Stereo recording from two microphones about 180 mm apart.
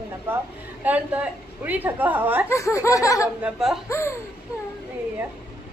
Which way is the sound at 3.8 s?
15° left (ahead or behind).